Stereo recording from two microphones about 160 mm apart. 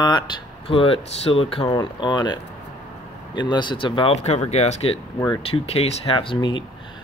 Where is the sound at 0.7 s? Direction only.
35° left (ahead or behind).